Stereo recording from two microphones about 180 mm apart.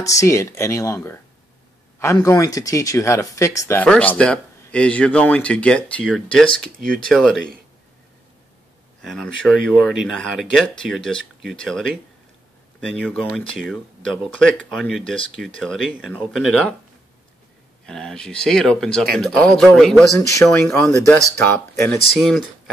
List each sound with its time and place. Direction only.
0.0 s speech: 15° left (ahead or behind)
9.0 s speech: 5° left (ahead or behind)
13.0 s speech: 5° left (ahead or behind)
17.8 s speech: 5° left (ahead or behind)
20.2 s speech: 15° left (ahead or behind)
22.2 s speech: centre (ahead or behind)